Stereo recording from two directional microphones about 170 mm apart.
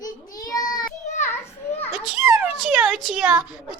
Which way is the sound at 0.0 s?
20° left (ahead or behind).